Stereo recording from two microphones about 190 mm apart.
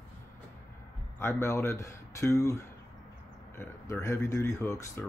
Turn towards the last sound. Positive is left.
turn(degrees=15)  # may be behind; listen again after turning